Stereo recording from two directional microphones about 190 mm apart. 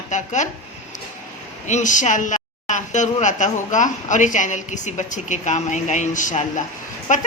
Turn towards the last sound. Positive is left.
turn(degrees=40)  # may be behind; listen again after turning